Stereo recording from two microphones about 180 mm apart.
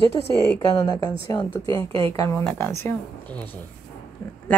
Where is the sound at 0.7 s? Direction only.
20° left (ahead or behind).